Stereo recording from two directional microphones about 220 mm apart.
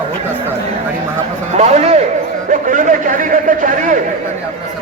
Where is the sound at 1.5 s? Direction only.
30° right (ahead or behind).